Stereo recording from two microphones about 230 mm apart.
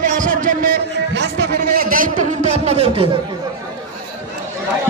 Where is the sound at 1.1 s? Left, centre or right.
Right.